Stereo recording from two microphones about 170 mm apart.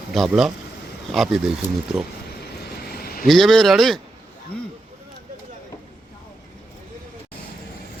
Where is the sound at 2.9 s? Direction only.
60° left (ahead or behind).